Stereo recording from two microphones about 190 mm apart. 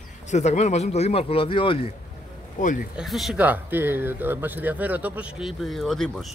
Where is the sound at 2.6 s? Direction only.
40° left (ahead or behind).